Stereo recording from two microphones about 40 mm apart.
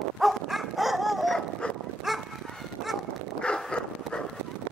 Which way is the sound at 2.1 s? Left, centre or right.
Centre.